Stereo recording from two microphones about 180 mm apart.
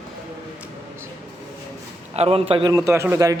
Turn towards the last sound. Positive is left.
turn(degrees=-15)  # may be behind; listen again after turning